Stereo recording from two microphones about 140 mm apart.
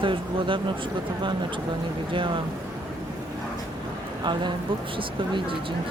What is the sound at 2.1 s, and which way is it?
Speech, 35° right (ahead or behind).